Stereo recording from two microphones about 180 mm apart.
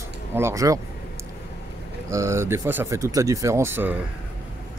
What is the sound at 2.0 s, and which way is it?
Speech, 15° right (ahead or behind).